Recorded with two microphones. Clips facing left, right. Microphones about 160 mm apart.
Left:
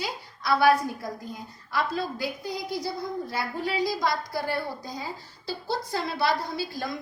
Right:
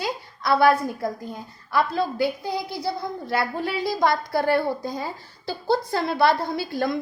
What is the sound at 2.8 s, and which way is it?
A woman's voice, 65° right (ahead or behind).